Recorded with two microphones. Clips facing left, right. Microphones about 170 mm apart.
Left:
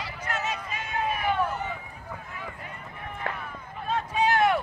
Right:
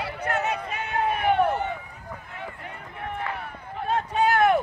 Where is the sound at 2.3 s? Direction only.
65° right (ahead or behind).